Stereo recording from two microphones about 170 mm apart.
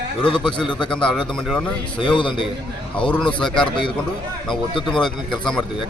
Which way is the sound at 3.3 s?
5° left (ahead or behind).